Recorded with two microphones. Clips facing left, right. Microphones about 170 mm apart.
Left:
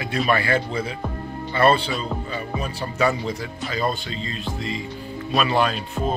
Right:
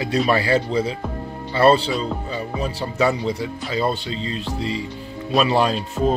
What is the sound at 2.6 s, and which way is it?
Speech, 25° right (ahead or behind).